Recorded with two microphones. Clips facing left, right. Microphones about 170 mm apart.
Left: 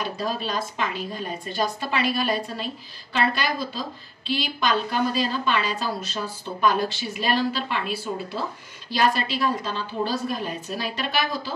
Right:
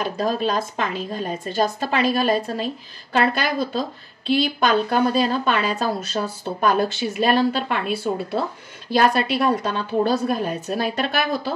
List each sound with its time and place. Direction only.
0.2 s a woman's voice: 50° right (ahead or behind)